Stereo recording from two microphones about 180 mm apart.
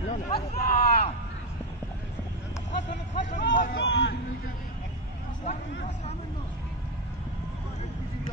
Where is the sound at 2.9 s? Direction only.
45° left (ahead or behind).